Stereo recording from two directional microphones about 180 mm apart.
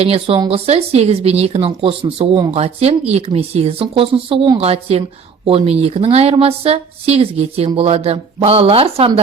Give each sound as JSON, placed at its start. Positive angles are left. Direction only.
{"t": 0.0, "sound": "a woman's voice", "side_deg": -35}